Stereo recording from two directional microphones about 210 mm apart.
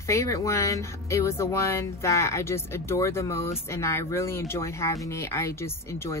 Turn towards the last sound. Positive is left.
turn(degrees=15)  # may be behind; listen again after turning